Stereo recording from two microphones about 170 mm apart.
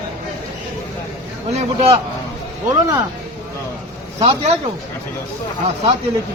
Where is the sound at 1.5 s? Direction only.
35° right (ahead or behind).